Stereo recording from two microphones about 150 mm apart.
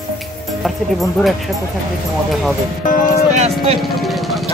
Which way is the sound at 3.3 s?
45° right (ahead or behind).